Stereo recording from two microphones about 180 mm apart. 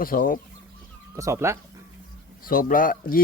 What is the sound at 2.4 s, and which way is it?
Speech, 50° left (ahead or behind).